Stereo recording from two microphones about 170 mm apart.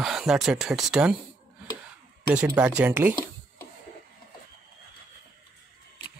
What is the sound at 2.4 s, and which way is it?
Speech, 10° right (ahead or behind).